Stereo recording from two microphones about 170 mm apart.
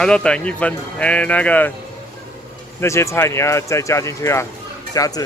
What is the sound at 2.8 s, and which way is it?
Speech, 15° left (ahead or behind).